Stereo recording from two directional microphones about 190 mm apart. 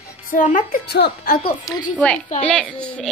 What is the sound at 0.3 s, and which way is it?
Speech, 45° left (ahead or behind).